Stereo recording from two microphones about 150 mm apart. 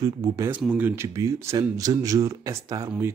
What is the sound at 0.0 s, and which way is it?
Speech, 20° right (ahead or behind).